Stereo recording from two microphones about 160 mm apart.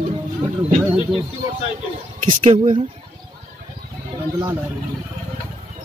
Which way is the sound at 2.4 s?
40° right (ahead or behind).